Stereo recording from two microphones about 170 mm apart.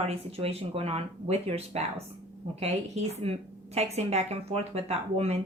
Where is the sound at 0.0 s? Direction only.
35° right (ahead or behind).